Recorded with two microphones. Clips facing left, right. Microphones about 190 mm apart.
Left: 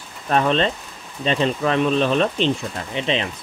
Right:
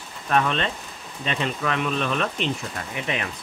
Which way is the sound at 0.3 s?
30° left (ahead or behind).